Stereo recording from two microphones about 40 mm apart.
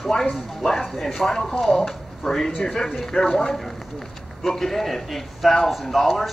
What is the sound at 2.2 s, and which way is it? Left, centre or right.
A man's voice, centre.